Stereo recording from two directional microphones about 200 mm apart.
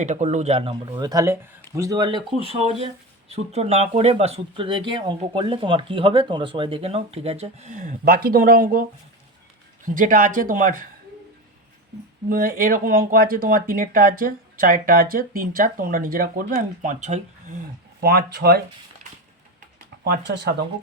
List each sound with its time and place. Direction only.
0.0 s speech: 35° right (ahead or behind)
12.3 s speech: 45° right (ahead or behind)
18.0 s speech: 55° right (ahead or behind)
20.1 s speech: 55° right (ahead or behind)